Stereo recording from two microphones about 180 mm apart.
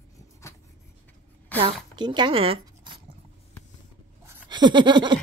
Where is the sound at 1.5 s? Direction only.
10° left (ahead or behind).